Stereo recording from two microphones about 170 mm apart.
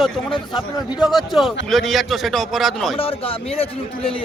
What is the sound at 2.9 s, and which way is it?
Speech, 35° left (ahead or behind).